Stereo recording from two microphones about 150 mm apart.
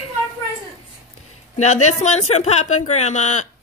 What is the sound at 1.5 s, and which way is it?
Speech, 50° left (ahead or behind).